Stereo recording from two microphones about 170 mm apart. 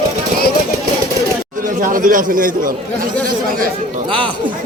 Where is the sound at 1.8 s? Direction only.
50° right (ahead or behind).